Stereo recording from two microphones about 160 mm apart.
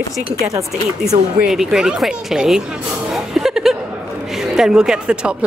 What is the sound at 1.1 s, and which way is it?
Speech, 35° right (ahead or behind).